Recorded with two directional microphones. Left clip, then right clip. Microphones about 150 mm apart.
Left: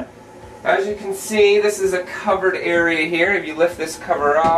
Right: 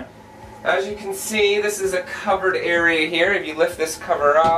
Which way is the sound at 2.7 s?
15° right (ahead or behind).